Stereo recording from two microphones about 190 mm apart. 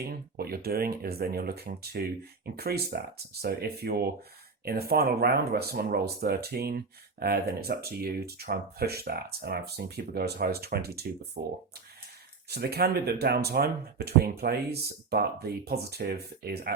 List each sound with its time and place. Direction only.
0.0 s speech: 55° right (ahead or behind)